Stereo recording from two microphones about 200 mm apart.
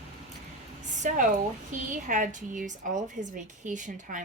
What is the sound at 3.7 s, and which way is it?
Speech, 40° right (ahead or behind).